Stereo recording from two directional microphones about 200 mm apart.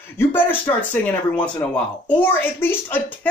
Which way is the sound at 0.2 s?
10° left (ahead or behind).